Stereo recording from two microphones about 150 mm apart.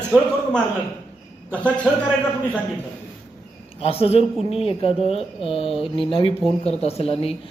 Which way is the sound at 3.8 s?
40° left (ahead or behind).